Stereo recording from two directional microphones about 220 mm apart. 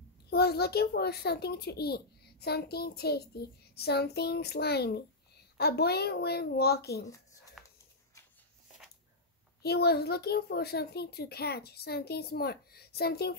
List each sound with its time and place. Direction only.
0.3 s a child's voice: 45° left (ahead or behind)
7.6 s a sound: centre (ahead or behind)
9.6 s a child's voice: 45° left (ahead or behind)